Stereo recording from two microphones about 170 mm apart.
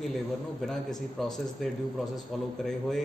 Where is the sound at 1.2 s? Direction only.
Centre (ahead or behind).